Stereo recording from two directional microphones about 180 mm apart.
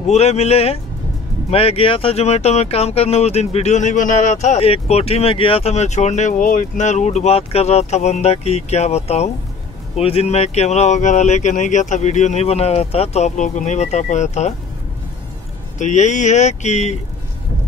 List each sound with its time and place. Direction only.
0.0 s speech: 35° left (ahead or behind)
15.8 s speech: 40° left (ahead or behind)